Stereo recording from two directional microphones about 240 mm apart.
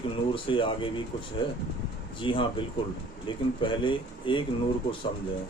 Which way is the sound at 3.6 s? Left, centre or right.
Left.